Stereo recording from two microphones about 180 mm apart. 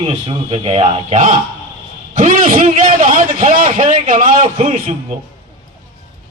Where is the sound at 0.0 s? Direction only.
30° right (ahead or behind); by 4.9 s 45° right (ahead or behind).